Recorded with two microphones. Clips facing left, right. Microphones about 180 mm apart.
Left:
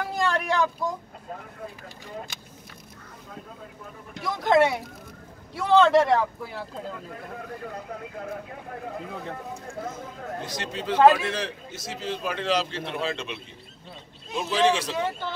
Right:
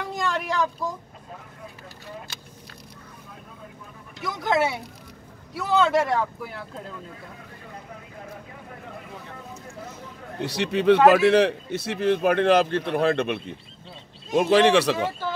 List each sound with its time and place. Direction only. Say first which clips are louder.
0.1 s a sound: left 1 dB; centre (ahead or behind)
4.2 s a man's voice: left 3 dB; centre (ahead or behind)
9.9 s a man's voice: even; 65° right (ahead or behind)